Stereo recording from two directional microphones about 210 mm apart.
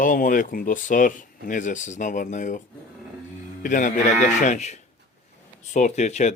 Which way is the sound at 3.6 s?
40° left (ahead or behind).